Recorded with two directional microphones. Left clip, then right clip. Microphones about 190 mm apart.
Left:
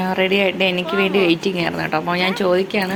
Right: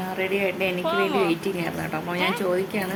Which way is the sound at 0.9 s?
20° right (ahead or behind).